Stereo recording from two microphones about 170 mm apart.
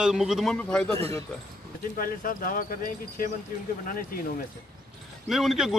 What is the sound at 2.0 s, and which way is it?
Speech, 55° left (ahead or behind).